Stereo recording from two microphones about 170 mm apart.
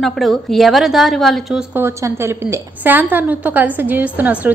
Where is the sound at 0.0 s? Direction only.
Centre (ahead or behind).